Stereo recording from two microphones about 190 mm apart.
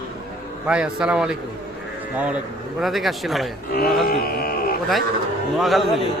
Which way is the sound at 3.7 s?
55° left (ahead or behind).